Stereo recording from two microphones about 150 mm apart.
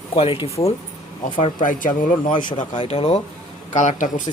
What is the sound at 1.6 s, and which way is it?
Speech, 60° left (ahead or behind).